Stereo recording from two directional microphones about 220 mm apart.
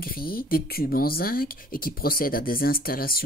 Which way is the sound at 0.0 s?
40° left (ahead or behind).